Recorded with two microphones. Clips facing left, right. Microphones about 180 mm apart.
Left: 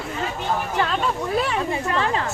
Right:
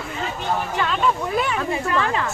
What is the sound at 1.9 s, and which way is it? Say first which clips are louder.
Speech: right 1 dB; 30° left (ahead or behind).